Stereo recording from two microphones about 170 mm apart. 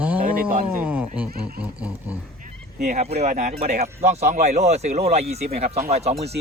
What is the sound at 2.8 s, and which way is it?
Speech, 50° right (ahead or behind).